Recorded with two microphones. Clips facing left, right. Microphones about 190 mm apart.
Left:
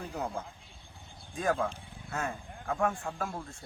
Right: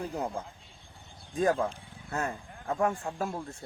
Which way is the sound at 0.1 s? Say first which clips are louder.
Right 2 dB; 20° right (ahead or behind).